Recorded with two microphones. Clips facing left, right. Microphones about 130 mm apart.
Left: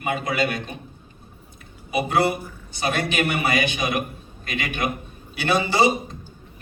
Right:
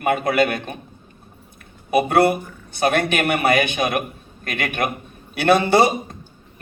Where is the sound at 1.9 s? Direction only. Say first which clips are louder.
Right 5 dB; 55° right (ahead or behind).